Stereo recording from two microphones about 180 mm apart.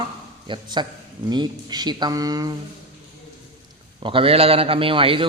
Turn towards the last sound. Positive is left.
turn(degrees=-30)  # may be behind; listen again after turning